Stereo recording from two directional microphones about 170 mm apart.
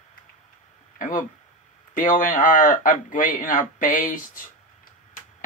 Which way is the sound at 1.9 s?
55° left (ahead or behind).